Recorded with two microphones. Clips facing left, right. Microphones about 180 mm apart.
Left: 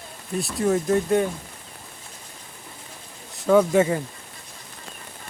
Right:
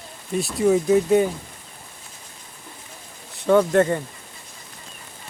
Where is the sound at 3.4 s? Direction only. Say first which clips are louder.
Right 1 dB; 5° left (ahead or behind).